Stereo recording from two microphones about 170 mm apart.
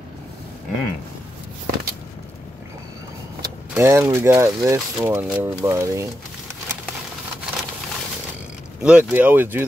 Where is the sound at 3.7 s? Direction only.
15° right (ahead or behind).